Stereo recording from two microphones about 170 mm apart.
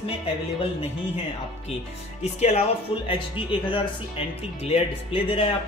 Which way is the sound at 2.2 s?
40° left (ahead or behind).